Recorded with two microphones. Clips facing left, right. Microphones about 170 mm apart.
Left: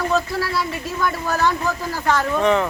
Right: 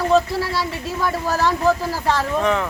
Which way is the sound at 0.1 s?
30° right (ahead or behind).